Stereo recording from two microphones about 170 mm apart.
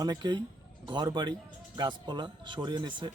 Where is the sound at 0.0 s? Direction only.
25° right (ahead or behind).